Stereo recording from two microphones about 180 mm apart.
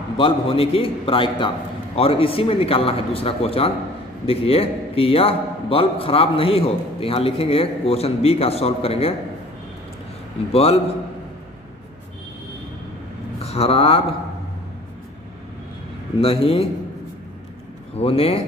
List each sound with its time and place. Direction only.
0.2 s a man's voice: 30° left (ahead or behind)
10.5 s a man's voice: 35° left (ahead or behind)
13.4 s speech: 35° left (ahead or behind)
16.2 s a man's voice: 30° left (ahead or behind)
17.9 s a man's voice: 35° left (ahead or behind)